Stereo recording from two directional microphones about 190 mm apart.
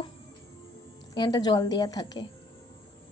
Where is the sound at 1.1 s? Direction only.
20° left (ahead or behind).